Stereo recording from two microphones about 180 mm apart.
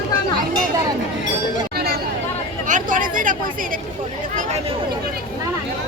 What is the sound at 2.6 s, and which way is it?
Chatter, 45° right (ahead or behind).